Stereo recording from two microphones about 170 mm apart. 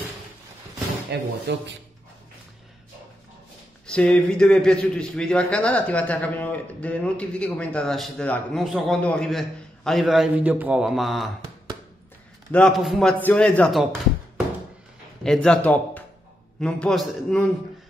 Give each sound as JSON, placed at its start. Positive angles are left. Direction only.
{"t": 1.1, "sound": "speech", "side_deg": -80}
{"t": 3.8, "sound": "a man's voice", "side_deg": 5}
{"t": 12.4, "sound": "a man's voice", "side_deg": 5}
{"t": 15.2, "sound": "a man's voice", "side_deg": 5}